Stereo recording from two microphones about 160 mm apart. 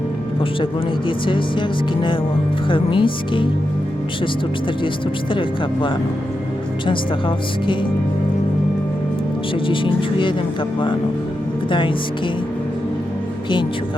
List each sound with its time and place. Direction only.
0.6 s speech: 30° left (ahead or behind)
5.3 s speech: 30° left (ahead or behind)
9.6 s speech: 30° left (ahead or behind)